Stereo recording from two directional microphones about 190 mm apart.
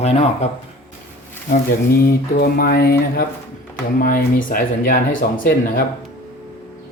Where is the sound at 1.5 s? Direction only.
55° left (ahead or behind).